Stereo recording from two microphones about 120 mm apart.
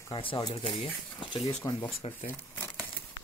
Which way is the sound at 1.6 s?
35° left (ahead or behind).